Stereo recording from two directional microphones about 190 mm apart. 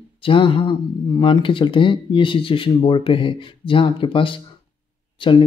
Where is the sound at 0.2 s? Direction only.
25° left (ahead or behind).